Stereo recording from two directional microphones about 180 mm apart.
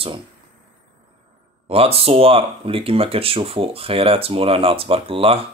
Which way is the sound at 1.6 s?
35° right (ahead or behind).